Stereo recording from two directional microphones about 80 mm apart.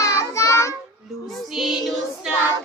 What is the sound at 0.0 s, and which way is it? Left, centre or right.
Child singing, left.